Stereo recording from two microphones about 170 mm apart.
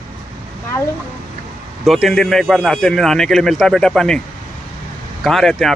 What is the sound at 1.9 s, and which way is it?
Speech, centre (ahead or behind).